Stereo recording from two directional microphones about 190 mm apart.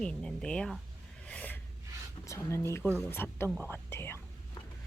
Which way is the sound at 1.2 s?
5° left (ahead or behind).